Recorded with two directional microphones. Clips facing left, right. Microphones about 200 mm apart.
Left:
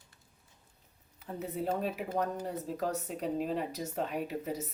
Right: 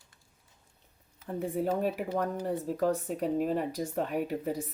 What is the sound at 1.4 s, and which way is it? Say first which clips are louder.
Speech: right 4 dB; 50° right (ahead or behind).